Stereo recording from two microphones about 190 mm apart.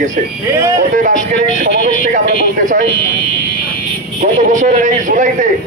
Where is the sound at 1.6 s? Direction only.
55° right (ahead or behind).